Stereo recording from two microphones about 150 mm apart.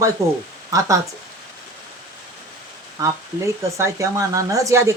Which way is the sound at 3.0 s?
20° right (ahead or behind).